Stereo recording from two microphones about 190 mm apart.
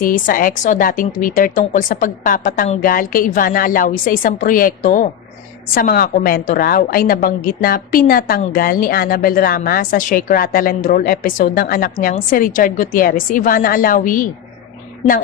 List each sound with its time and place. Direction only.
0.0 s a woman's voice: 45° left (ahead or behind)